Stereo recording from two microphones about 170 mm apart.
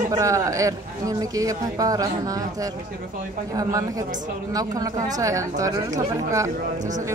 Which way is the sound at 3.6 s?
20° right (ahead or behind).